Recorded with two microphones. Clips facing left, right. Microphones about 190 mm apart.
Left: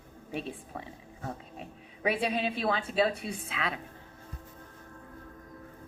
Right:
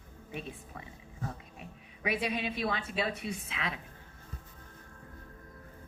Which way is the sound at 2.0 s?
30° left (ahead or behind).